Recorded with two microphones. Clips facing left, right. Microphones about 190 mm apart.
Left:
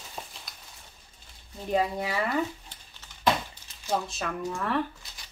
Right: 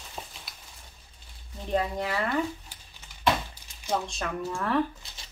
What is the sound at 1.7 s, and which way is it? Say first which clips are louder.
Speech: left 1 dB; 10° left (ahead or behind).